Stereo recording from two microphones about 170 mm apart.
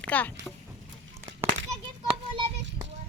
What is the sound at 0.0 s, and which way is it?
Speech, 10° left (ahead or behind).